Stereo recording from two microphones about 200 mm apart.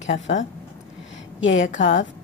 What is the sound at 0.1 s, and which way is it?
A woman's voice, 65° left (ahead or behind).